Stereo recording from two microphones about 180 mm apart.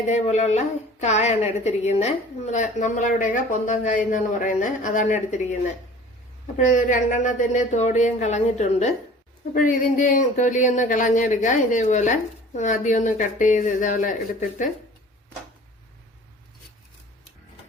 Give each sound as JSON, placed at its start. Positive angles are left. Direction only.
{"t": 0.0, "sound": "a woman's voice", "side_deg": 40}
{"t": 6.6, "sound": "a woman's voice", "side_deg": 40}